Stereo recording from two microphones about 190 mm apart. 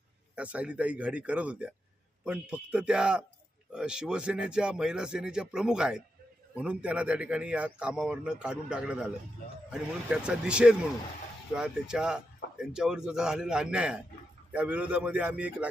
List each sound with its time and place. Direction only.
0.3 s speech: 5° right (ahead or behind)